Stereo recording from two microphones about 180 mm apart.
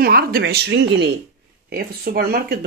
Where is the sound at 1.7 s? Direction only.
60° right (ahead or behind).